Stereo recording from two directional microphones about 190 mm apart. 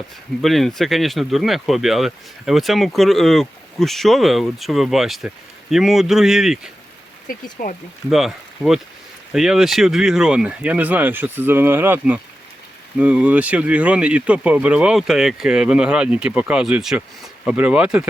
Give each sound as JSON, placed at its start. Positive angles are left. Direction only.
{"t": 0.4, "sound": "speech", "side_deg": 0}
{"t": 7.6, "sound": "speech", "side_deg": 50}
{"t": 8.1, "sound": "speech", "side_deg": 0}